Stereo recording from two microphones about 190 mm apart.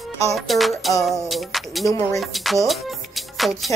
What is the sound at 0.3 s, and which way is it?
Music, centre (ahead or behind).